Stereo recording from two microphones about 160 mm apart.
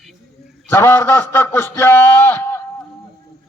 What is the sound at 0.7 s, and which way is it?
Speech, 15° left (ahead or behind).